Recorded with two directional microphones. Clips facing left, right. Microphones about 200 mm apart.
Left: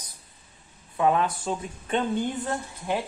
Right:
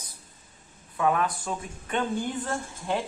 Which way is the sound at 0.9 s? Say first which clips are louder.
Left 2 dB; 25° left (ahead or behind).